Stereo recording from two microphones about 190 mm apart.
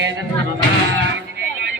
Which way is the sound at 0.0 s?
70° right (ahead or behind).